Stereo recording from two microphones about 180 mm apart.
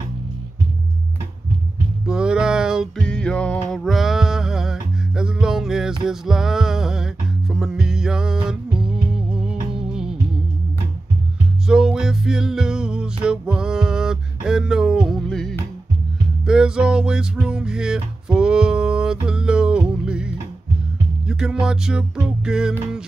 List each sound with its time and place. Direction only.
2.0 s music: 5° right (ahead or behind)
11.6 s music: 5° right (ahead or behind)
21.3 s music: 5° right (ahead or behind)